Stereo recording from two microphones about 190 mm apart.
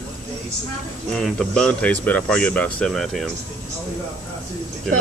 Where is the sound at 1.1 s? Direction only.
5° left (ahead or behind).